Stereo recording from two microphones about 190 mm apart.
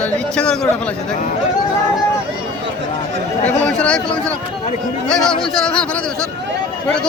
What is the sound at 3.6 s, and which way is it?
Speech, 5° left (ahead or behind).